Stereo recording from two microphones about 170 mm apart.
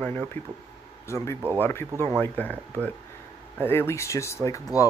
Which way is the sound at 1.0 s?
15° left (ahead or behind).